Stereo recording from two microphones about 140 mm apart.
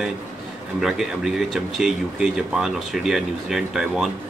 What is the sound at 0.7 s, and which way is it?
Speech, 5° right (ahead or behind).